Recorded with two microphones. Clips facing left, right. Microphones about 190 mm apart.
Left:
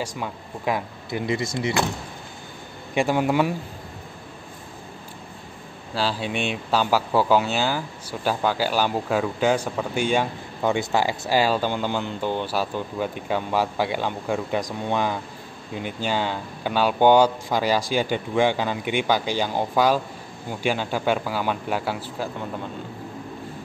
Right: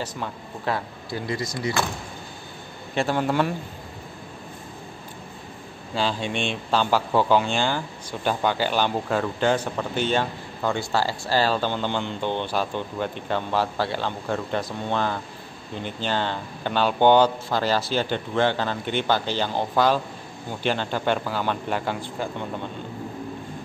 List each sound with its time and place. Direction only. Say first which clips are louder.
0.0 s speech: left 1 dB; 10° left (ahead or behind)
2.9 s speech: left 2 dB; 10° left (ahead or behind)
5.9 s speech: even; 5° left (ahead or behind)